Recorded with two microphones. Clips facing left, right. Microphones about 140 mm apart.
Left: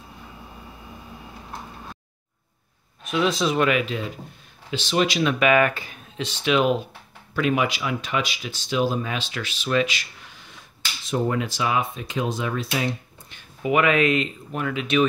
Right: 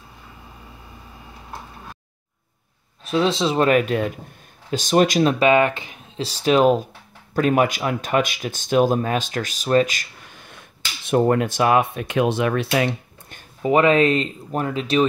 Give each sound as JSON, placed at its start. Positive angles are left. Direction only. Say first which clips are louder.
{"t": 3.0, "sound": "speech", "louder": "right 3 dB", "side_deg": -30}
{"t": 3.8, "sound": "speech", "louder": "right 6 dB", "side_deg": -50}
{"t": 6.2, "sound": "speech", "louder": "right 5 dB", "side_deg": -40}
{"t": 13.6, "sound": "speech", "louder": "right 4 dB", "side_deg": -35}